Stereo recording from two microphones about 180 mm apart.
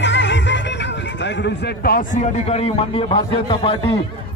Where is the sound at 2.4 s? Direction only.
30° left (ahead or behind).